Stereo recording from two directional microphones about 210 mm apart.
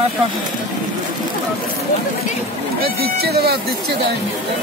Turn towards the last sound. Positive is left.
turn(degrees=-50)  # may be behind; listen again after turning